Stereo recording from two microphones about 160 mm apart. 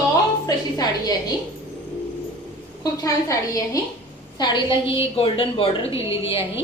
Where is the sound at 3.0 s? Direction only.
20° left (ahead or behind); by 6.0 s 35° left (ahead or behind).